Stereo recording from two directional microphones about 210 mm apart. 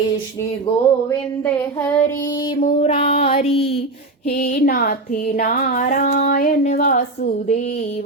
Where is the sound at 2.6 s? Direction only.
35° left (ahead or behind).